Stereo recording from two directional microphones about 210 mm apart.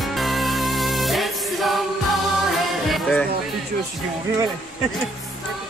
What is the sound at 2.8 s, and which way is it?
Music, centre (ahead or behind).